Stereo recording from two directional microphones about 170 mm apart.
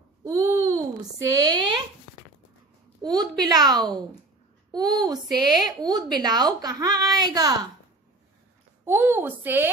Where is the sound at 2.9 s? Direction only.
25° right (ahead or behind).